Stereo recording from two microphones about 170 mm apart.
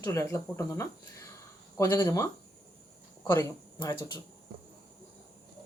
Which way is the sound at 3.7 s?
25° left (ahead or behind).